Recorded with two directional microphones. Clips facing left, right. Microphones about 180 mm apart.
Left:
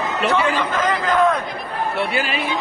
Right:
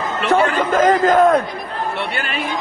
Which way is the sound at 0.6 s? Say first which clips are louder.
Right 7 dB; 50° right (ahead or behind).